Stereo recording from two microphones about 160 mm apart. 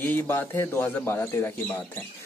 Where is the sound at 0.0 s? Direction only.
15° left (ahead or behind).